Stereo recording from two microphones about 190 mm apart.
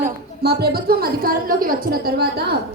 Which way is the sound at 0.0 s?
55° right (ahead or behind).